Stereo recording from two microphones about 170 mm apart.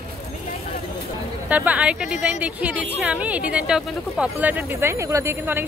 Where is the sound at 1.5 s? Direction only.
10° right (ahead or behind).